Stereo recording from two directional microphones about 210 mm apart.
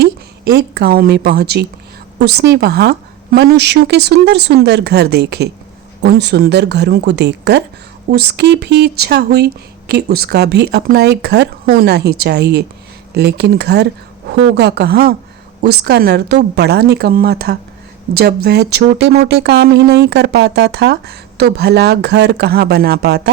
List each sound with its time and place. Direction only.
0.5 s speech: 50° right (ahead or behind)